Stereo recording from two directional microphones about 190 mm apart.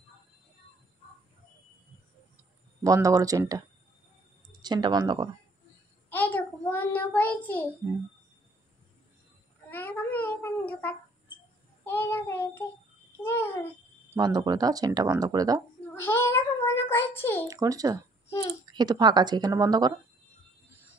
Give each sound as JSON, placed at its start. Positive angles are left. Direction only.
{"t": 2.8, "sound": "speech", "side_deg": -15}
{"t": 6.0, "sound": "child singing", "side_deg": 10}
{"t": 9.7, "sound": "a sound", "side_deg": 10}
{"t": 11.8, "sound": "child singing", "side_deg": 10}
{"t": 13.2, "sound": "babbling", "side_deg": 10}
{"t": 14.1, "sound": "speech", "side_deg": -20}
{"t": 15.9, "sound": "a child's voice", "side_deg": 10}
{"t": 17.5, "sound": "speech", "side_deg": -20}